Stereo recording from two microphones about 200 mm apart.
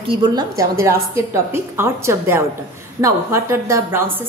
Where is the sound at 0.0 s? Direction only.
25° right (ahead or behind).